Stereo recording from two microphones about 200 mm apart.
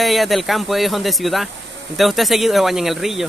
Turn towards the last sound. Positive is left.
turn(degrees=0)  # may be behind; listen again after turning